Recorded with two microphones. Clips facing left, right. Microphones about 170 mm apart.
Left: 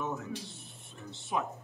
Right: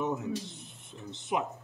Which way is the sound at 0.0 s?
20° right (ahead or behind).